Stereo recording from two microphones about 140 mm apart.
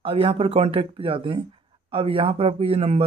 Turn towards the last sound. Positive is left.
turn(degrees=-45)  # may be behind; listen again after turning